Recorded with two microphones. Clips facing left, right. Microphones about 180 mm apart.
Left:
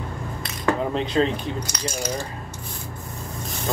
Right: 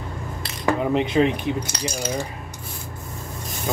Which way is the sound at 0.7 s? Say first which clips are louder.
Right 4 dB; 15° right (ahead or behind).